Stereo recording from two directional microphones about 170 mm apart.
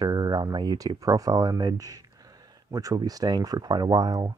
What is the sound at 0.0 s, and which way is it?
Speech, 20° right (ahead or behind).